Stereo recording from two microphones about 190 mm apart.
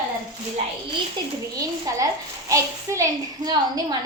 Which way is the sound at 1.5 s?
20° right (ahead or behind).